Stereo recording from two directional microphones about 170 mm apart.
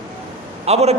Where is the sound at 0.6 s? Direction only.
40° right (ahead or behind).